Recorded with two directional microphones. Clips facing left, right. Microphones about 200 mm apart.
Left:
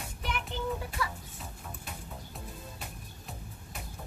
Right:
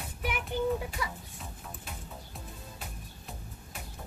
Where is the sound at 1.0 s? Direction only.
15° right (ahead or behind).